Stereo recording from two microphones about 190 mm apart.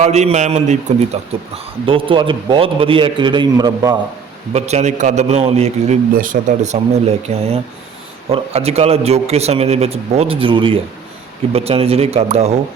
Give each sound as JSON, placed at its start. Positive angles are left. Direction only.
{"t": 0.0, "sound": "a man's voice", "side_deg": -35}
{"t": 4.5, "sound": "a man's voice", "side_deg": -35}